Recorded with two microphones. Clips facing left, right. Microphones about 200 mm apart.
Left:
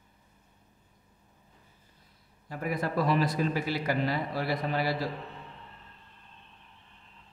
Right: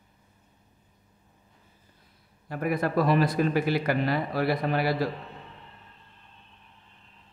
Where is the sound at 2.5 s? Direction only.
60° right (ahead or behind).